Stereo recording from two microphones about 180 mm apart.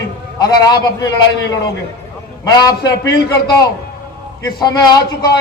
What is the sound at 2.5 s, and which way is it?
A man's voice, 20° left (ahead or behind).